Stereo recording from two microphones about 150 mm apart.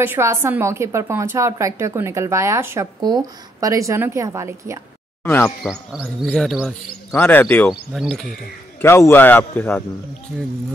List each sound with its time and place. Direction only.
0.0 s a woman's voice: 15° right (ahead or behind)
5.2 s speech: 10° left (ahead or behind)
5.9 s speech: 10° right (ahead or behind)
6.3 s speech: centre (ahead or behind)
7.2 s a man's voice: 15° left (ahead or behind)
7.7 s speech: 5° right (ahead or behind)
8.8 s a man's voice: 15° left (ahead or behind)